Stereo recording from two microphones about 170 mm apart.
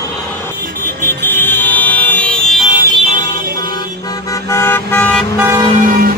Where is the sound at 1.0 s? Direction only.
10° left (ahead or behind).